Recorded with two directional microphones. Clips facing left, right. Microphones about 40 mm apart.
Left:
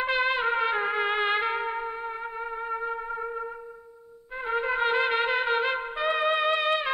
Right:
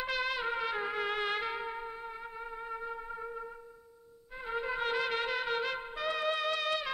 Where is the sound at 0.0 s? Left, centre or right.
Left.